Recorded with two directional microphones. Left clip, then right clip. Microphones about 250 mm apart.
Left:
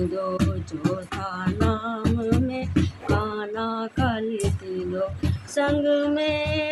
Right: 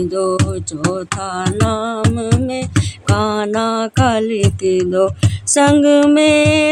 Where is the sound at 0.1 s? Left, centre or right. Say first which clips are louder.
Right 9 dB; right.